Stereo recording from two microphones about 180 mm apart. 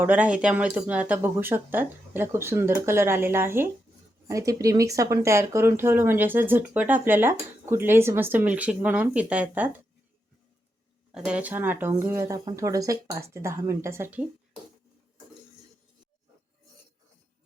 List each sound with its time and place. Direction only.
0.0 s speech: 10° right (ahead or behind)
11.1 s speech: 5° right (ahead or behind)